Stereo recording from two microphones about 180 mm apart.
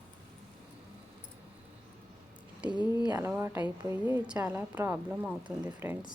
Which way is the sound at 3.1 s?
15° right (ahead or behind).